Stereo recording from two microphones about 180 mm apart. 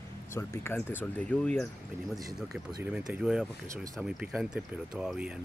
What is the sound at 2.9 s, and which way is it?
Speech, 5° right (ahead or behind).